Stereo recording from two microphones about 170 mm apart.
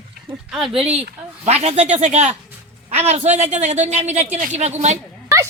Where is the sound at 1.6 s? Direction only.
40° right (ahead or behind).